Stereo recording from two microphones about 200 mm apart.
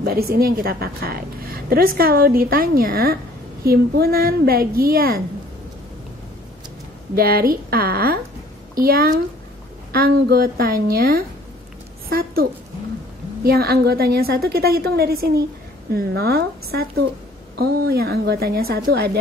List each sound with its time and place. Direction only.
0.0 s a woman's voice: 50° right (ahead or behind)
7.2 s a woman's voice: 50° right (ahead or behind)